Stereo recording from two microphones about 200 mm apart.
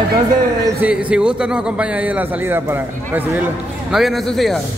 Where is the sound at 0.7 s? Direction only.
10° right (ahead or behind).